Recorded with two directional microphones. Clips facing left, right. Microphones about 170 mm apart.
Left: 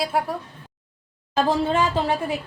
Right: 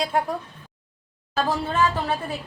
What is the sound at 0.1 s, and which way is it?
Speech, 5° left (ahead or behind).